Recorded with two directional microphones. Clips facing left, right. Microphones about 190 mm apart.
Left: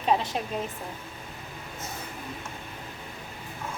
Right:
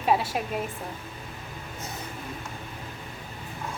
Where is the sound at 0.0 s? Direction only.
10° right (ahead or behind).